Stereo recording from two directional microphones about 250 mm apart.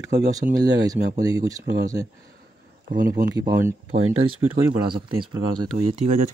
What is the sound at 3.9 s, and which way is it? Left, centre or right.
Speech, right.